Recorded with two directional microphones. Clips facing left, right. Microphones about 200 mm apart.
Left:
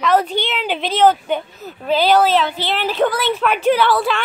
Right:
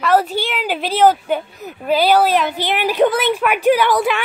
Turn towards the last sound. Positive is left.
turn(degrees=-15)  # may be behind; listen again after turning